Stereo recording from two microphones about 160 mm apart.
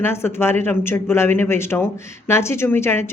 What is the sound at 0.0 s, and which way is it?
Speech, 15° left (ahead or behind).